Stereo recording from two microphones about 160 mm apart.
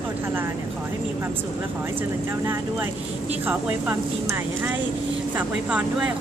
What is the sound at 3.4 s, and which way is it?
A woman's voice, 10° right (ahead or behind).